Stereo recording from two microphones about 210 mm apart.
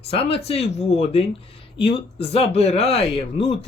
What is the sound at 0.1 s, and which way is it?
Speech, 25° left (ahead or behind).